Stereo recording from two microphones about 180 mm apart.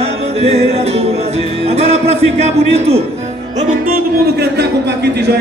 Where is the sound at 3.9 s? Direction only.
60° right (ahead or behind).